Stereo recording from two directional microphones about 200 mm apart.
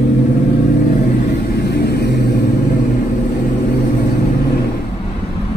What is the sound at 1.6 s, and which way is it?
Vehicle, 55° left (ahead or behind).